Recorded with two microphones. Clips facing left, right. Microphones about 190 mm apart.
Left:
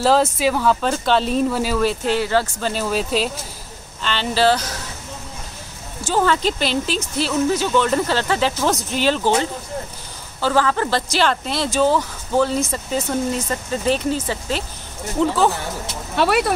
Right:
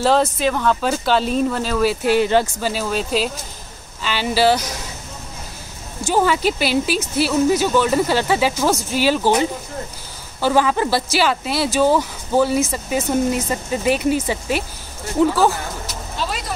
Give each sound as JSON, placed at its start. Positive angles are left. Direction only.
{"t": 0.0, "sound": "speech", "side_deg": 5}
{"t": 1.8, "sound": "speech", "side_deg": -5}
{"t": 2.1, "sound": "speech", "side_deg": -15}
{"t": 2.6, "sound": "speech", "side_deg": 0}
{"t": 6.0, "sound": "speech", "side_deg": -10}
{"t": 10.4, "sound": "speech", "side_deg": -15}
{"t": 16.2, "sound": "speech", "side_deg": 65}